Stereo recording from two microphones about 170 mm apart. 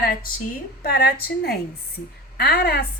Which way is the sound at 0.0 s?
60° left (ahead or behind).